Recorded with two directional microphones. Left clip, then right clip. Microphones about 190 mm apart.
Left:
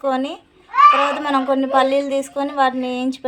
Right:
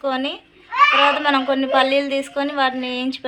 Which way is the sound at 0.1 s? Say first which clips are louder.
Left 2 dB; 45° left (ahead or behind).